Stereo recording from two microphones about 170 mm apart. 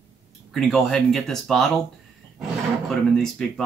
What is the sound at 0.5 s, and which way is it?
Speech, centre (ahead or behind).